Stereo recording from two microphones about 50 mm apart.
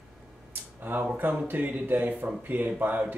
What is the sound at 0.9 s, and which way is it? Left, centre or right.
Speech, right.